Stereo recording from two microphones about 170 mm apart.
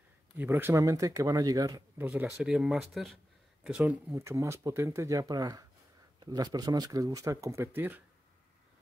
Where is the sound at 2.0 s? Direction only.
10° right (ahead or behind).